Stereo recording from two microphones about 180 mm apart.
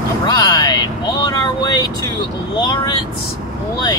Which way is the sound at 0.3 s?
20° left (ahead or behind).